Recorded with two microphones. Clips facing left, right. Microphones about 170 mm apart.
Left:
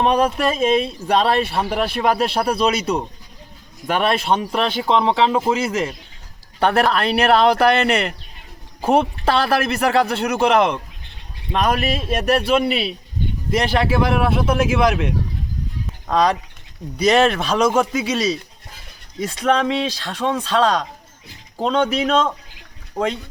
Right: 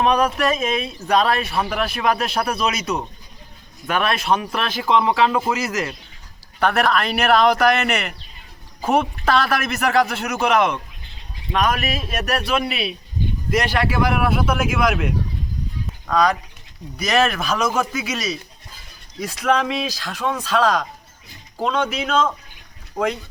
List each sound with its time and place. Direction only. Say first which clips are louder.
0.0 s speech: left 1 dB; 30° left (ahead or behind)
19.4 s speech: left 2 dB; 30° left (ahead or behind)